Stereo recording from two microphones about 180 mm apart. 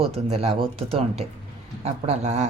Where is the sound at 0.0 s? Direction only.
35° right (ahead or behind).